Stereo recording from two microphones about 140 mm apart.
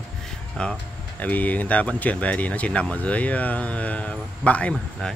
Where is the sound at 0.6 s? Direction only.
10° left (ahead or behind).